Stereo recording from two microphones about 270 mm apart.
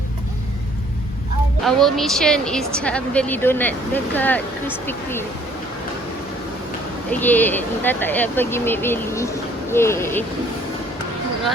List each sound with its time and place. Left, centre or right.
1.6 s a woman's voice: centre
7.1 s speech: centre